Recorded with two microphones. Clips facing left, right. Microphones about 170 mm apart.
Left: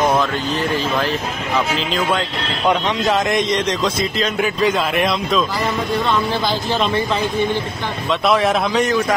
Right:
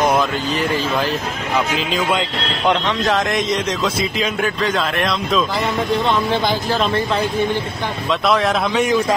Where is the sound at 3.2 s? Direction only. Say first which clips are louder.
Left 1 dB; centre (ahead or behind).